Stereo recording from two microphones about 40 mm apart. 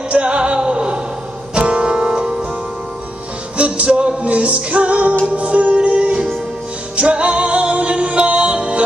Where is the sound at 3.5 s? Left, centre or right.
Right.